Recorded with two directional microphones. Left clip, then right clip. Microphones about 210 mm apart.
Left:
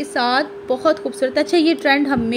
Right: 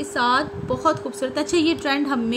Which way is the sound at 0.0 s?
5° left (ahead or behind).